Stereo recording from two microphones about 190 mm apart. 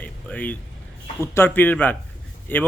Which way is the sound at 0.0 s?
10° left (ahead or behind).